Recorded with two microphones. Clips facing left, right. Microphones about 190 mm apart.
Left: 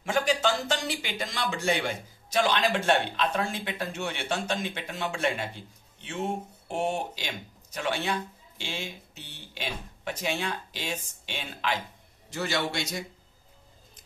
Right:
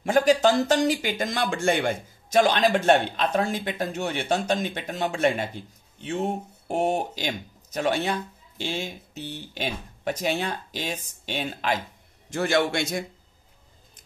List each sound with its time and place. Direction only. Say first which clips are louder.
0.0 s speech: right 7 dB; 45° right (ahead or behind)
12.3 s speech: right 7 dB; 50° right (ahead or behind)